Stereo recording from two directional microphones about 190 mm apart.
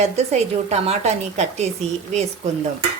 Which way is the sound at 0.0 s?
35° right (ahead or behind).